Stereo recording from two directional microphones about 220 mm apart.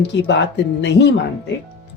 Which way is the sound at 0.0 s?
50° left (ahead or behind).